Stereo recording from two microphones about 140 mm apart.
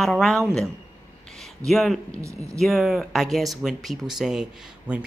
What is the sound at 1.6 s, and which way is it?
Speech, centre (ahead or behind).